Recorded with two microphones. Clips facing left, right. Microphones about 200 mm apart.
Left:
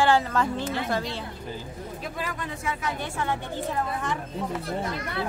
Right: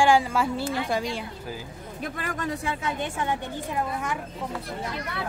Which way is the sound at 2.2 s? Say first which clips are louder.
Right 1 dB; 50° right (ahead or behind).